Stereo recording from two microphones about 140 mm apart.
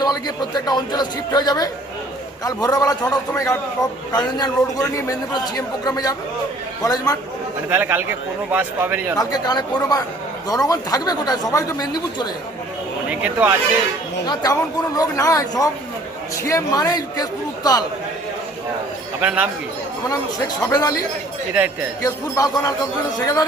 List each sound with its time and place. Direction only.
0.0 s a man's voice: 30° left (ahead or behind)
7.7 s a man's voice: 15° right (ahead or behind)
9.1 s a man's voice: 30° left (ahead or behind)
13.1 s a man's voice: 10° right (ahead or behind)
14.3 s a man's voice: 25° left (ahead or behind)
19.2 s a man's voice: 10° right (ahead or behind)
20.6 s a man's voice: 25° left (ahead or behind)
21.5 s a man's voice: 15° right (ahead or behind)
22.0 s a man's voice: 25° left (ahead or behind)